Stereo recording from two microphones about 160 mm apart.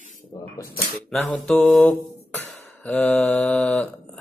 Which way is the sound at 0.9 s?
Centre (ahead or behind).